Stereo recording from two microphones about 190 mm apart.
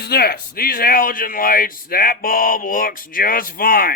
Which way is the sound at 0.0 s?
55° left (ahead or behind).